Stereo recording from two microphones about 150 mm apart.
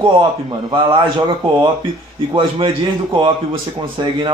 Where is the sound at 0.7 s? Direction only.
30° right (ahead or behind).